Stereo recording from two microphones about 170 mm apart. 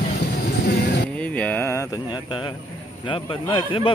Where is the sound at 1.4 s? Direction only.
10° left (ahead or behind).